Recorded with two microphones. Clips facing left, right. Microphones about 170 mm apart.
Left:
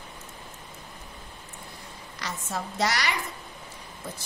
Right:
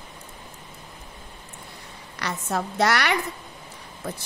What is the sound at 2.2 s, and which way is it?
A woman's voice, 65° right (ahead or behind).